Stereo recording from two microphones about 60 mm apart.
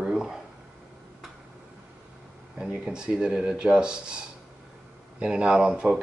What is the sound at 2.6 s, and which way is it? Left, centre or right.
Speech, centre.